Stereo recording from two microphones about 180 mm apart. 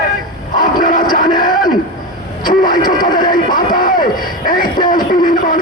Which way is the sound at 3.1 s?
50° left (ahead or behind).